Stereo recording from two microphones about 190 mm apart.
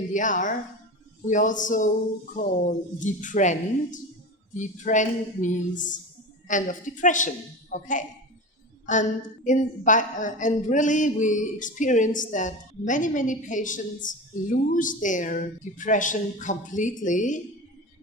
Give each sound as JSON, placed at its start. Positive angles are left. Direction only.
{"t": 0.1, "sound": "a woman's voice", "side_deg": 40}